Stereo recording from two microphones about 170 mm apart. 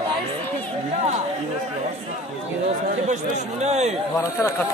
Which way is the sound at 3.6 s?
40° right (ahead or behind).